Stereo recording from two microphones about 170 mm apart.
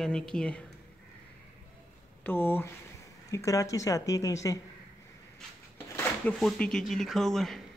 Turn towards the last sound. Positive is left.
turn(degrees=0)  # may be behind; listen again after turning